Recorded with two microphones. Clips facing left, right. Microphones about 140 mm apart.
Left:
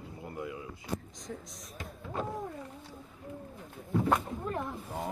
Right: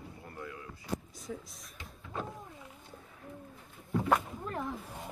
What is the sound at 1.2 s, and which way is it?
Speech, 5° right (ahead or behind).